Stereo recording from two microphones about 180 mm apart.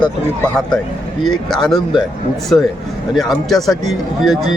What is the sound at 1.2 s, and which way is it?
A man's voice, centre (ahead or behind).